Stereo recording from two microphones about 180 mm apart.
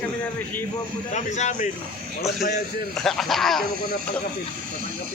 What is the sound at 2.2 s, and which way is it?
Speech, centre (ahead or behind).